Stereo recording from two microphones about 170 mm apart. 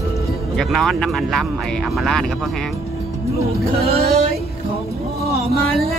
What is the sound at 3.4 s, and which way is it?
Speech, 40° right (ahead or behind).